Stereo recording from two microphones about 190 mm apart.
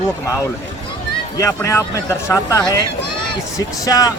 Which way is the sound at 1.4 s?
15° left (ahead or behind).